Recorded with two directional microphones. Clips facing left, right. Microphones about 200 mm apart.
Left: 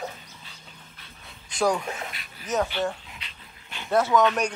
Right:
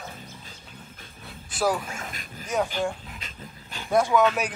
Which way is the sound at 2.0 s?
45° right (ahead or behind).